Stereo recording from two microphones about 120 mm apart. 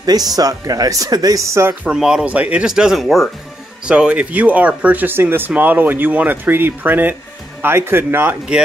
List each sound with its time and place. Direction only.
0.0 s speech: 30° right (ahead or behind)
1.9 s speech: 5° right (ahead or behind)